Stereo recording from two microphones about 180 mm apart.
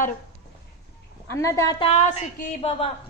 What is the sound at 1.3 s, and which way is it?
Speech, 15° left (ahead or behind).